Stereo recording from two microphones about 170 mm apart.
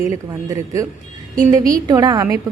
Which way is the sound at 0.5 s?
20° right (ahead or behind).